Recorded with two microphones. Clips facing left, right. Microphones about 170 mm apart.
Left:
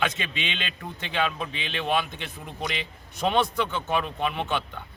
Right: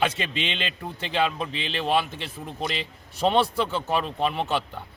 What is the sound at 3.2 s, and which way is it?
A man's voice, 30° right (ahead or behind).